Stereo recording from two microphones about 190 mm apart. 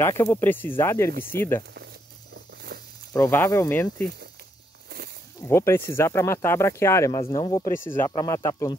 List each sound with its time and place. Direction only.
0.0 s speech: 15° left (ahead or behind)
3.1 s speech: 15° left (ahead or behind)
4.8 s walk: 55° right (ahead or behind)
5.5 s speech: 15° left (ahead or behind)